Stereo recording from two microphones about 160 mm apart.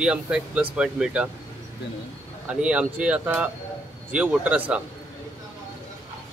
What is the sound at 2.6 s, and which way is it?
Speech, 5° right (ahead or behind).